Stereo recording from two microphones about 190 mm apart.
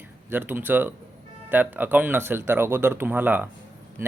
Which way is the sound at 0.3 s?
10° right (ahead or behind).